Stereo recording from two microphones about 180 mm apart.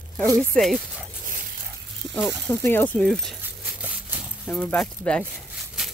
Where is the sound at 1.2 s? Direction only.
50° right (ahead or behind).